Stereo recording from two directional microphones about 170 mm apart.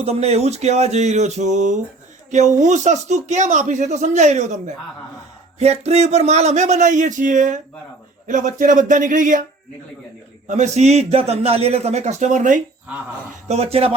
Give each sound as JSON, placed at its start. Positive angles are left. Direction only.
{"t": 0.0, "sound": "speech", "side_deg": -35}
{"t": 10.4, "sound": "a man's voice", "side_deg": -45}
{"t": 13.5, "sound": "speech", "side_deg": -35}